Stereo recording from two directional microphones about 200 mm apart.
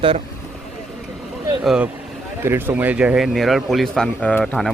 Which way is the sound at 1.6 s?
5° right (ahead or behind).